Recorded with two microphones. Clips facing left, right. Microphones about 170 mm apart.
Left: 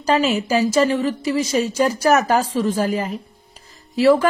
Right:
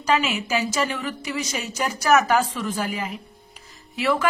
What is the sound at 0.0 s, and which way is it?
Speech, 35° left (ahead or behind).